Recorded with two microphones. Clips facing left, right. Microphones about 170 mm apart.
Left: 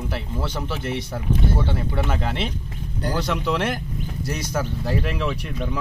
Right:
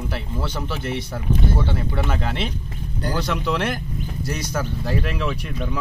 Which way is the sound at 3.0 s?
15° left (ahead or behind).